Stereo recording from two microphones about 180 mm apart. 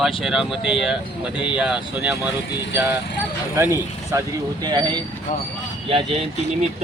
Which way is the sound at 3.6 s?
15° right (ahead or behind).